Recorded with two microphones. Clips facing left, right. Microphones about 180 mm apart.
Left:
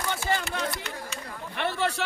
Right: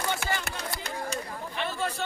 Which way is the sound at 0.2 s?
65° right (ahead or behind).